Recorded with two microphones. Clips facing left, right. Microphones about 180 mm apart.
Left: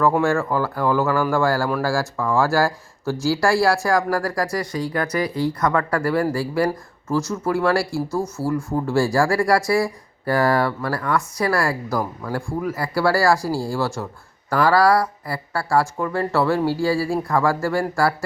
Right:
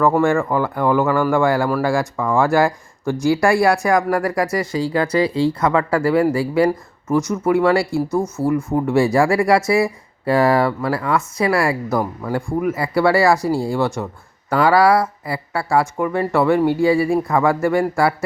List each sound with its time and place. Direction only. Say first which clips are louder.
0.0 s speech: right 3 dB; 5° left (ahead or behind)
4.4 s speech: right 4 dB; 25° right (ahead or behind)
15.5 s speech: right 2 dB; centre (ahead or behind)
16.0 s speech: right 3 dB; 10° right (ahead or behind)
17.2 s speech: right 3 dB; centre (ahead or behind)
17.6 s speech: right 4 dB; 20° right (ahead or behind)